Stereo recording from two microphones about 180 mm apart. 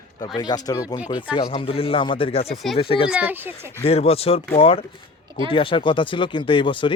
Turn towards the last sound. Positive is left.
turn(degrees=30)  # may be behind; listen again after turning